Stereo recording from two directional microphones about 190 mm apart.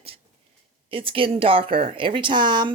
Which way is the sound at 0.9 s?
30° right (ahead or behind).